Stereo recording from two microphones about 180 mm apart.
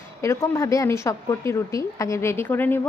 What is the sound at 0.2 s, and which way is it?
A woman's voice, 15° left (ahead or behind).